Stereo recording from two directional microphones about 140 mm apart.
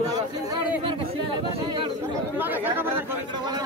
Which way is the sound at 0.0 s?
25° right (ahead or behind).